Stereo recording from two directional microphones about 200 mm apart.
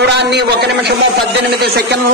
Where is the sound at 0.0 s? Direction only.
55° right (ahead or behind).